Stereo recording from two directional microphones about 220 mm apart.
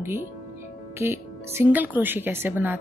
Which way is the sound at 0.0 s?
10° right (ahead or behind).